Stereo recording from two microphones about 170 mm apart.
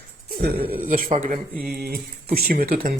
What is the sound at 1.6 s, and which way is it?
Speech, 65° right (ahead or behind).